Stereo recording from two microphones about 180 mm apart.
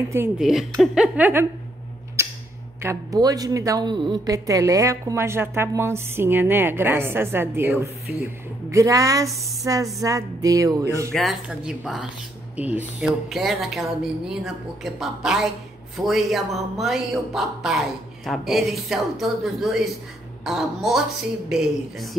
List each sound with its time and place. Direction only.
0.4 s speech: centre (ahead or behind)
2.8 s a woman's voice: 15° right (ahead or behind)
10.0 s music: 20° right (ahead or behind)
11.1 s speech: centre (ahead or behind)